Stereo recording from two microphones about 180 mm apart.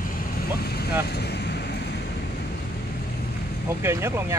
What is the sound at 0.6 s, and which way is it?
Vehicle, 60° left (ahead or behind).